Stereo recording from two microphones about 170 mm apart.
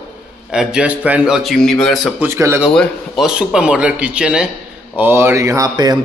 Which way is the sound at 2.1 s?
15° right (ahead or behind).